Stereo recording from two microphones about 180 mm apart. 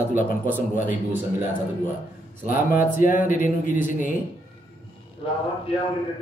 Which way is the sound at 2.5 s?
50° left (ahead or behind).